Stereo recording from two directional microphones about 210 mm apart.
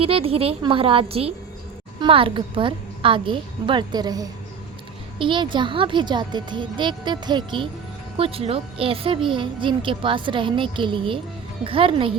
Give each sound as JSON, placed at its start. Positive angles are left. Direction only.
{"t": 0.0, "sound": "a woman's voice", "side_deg": -25}